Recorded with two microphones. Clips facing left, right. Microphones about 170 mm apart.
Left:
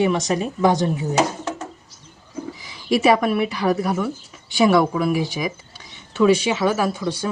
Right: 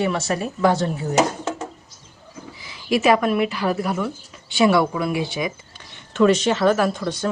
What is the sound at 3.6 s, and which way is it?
Speech, centre (ahead or behind).